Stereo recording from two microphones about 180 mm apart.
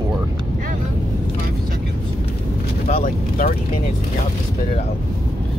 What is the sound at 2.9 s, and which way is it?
Speech, 50° left (ahead or behind).